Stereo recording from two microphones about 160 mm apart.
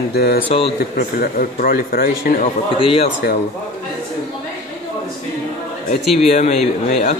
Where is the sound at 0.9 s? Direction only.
70° left (ahead or behind).